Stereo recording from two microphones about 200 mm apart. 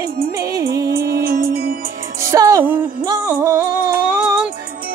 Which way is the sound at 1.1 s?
50° right (ahead or behind).